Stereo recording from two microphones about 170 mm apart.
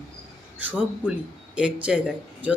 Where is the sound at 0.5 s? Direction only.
10° right (ahead or behind).